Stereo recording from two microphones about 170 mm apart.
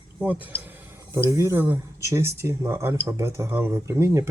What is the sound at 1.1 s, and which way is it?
Speech, 15° right (ahead or behind).